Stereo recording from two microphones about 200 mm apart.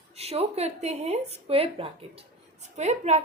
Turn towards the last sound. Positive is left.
turn(degrees=-35)  # may be behind; listen again after turning